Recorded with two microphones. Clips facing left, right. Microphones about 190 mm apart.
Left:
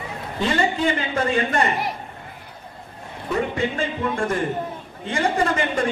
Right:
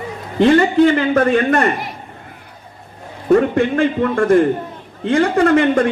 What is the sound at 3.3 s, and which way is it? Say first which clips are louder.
A man's voice: right 10 dB; 60° right (ahead or behind).